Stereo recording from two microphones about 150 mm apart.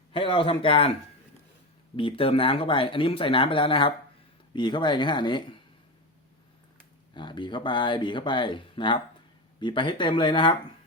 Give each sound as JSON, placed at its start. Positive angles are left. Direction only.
{"t": 0.1, "sound": "speech", "side_deg": 35}
{"t": 2.0, "sound": "speech", "side_deg": 35}
{"t": 7.1, "sound": "speech", "side_deg": 30}